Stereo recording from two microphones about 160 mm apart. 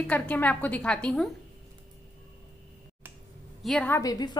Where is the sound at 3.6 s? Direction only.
Centre (ahead or behind).